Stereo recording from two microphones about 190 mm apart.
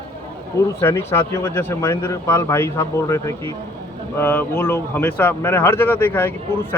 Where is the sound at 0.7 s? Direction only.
15° left (ahead or behind).